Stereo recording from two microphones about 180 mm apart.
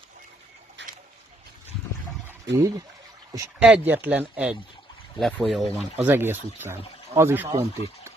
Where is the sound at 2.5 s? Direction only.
75° right (ahead or behind).